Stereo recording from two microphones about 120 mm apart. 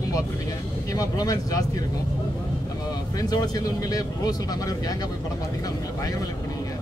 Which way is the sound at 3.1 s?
30° left (ahead or behind).